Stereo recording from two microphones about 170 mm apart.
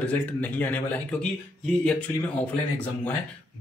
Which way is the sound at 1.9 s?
5° left (ahead or behind).